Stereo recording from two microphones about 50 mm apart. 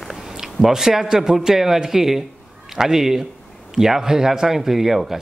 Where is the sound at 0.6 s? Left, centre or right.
Centre.